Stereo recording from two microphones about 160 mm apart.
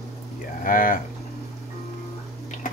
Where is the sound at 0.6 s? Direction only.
60° left (ahead or behind).